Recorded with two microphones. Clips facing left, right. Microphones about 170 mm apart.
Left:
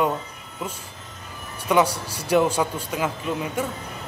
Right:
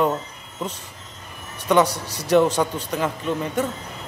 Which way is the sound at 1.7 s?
10° left (ahead or behind).